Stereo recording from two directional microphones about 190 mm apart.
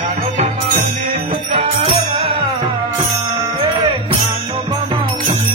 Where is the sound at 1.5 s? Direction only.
30° right (ahead or behind).